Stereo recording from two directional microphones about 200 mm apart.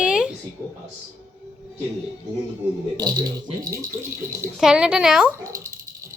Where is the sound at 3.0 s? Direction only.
20° right (ahead or behind).